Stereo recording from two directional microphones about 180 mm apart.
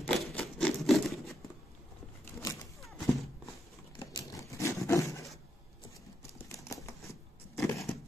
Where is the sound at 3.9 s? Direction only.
20° left (ahead or behind).